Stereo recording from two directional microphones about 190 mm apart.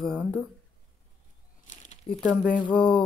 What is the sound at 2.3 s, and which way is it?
Speech, 5° left (ahead or behind).